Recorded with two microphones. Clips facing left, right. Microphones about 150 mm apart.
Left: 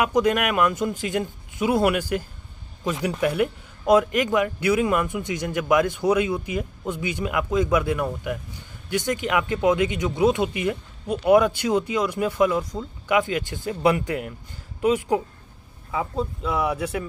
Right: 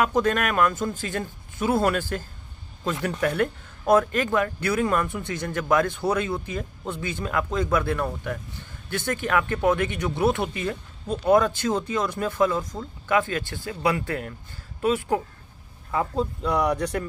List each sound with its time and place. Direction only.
0.0 s speech: 15° left (ahead or behind)
15.9 s speech: centre (ahead or behind)